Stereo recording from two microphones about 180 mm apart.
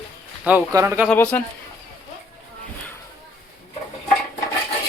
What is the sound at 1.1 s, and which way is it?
Speech, 10° left (ahead or behind).